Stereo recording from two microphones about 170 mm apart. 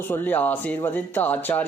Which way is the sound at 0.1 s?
10° left (ahead or behind).